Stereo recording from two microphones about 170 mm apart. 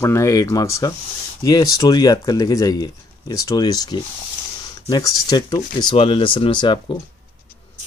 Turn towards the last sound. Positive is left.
turn(degrees=30)  # may be behind; listen again after turning